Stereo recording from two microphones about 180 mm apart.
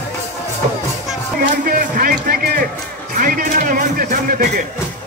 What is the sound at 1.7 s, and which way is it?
A man's voice, 55° right (ahead or behind).